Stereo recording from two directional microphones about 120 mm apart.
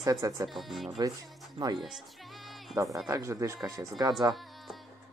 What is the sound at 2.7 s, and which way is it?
Speech, 25° right (ahead or behind).